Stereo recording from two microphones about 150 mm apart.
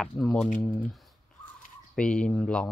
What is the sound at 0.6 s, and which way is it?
Speech, 10° left (ahead or behind).